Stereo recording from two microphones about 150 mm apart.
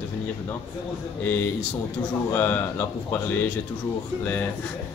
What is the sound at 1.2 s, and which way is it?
A man's voice, 10° left (ahead or behind).